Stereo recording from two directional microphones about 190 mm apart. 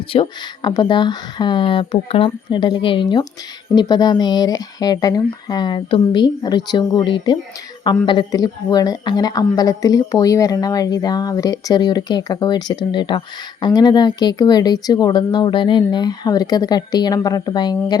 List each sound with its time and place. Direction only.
0.1 s a woman's voice: 25° left (ahead or behind)